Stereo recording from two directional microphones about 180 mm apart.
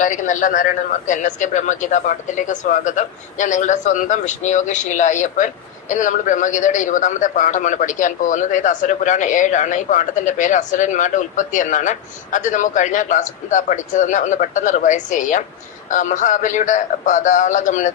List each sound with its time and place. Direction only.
0.0 s a man's voice: 45° left (ahead or behind)